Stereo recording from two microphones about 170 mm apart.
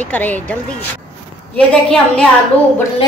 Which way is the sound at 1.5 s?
5° left (ahead or behind).